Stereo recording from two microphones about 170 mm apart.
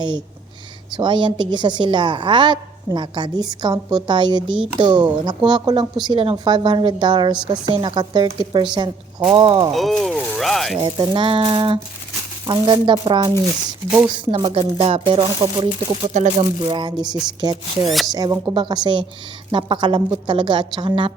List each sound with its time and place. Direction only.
0.9 s speech: 25° right (ahead or behind)
9.7 s speech: centre (ahead or behind)
10.8 s speech: 25° right (ahead or behind)
17.8 s speech: centre (ahead or behind)
18.1 s speech: 20° right (ahead or behind)